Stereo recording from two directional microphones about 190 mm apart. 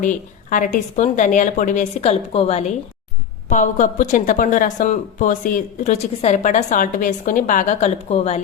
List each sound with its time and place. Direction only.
0.0 s speech: 45° left (ahead or behind)